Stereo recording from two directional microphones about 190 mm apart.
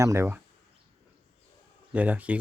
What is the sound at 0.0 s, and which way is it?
Speech, 15° right (ahead or behind).